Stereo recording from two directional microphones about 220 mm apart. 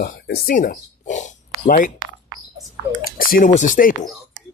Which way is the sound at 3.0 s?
40° left (ahead or behind).